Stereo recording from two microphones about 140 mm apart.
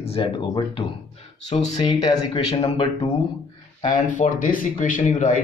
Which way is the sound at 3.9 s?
70° left (ahead or behind).